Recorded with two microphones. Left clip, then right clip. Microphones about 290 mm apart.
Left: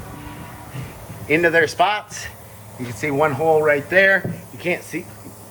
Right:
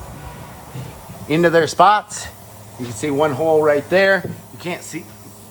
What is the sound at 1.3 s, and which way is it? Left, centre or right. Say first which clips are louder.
Speech: right 1 dB; right.